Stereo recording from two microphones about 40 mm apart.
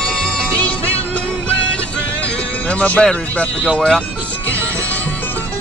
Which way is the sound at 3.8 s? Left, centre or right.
Centre.